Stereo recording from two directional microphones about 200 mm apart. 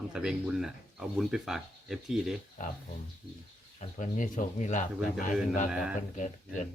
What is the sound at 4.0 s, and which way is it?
Speech, 40° left (ahead or behind).